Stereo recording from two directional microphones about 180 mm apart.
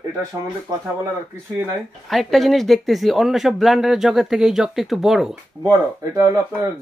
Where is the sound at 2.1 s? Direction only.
Centre (ahead or behind).